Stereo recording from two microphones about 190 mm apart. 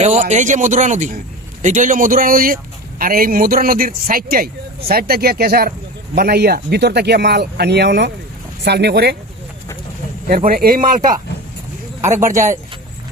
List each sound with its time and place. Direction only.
0.0 s a man's voice: 40° right (ahead or behind); by 9.1 s 60° right (ahead or behind)
10.2 s a man's voice: 50° right (ahead or behind)
12.0 s speech: 40° right (ahead or behind)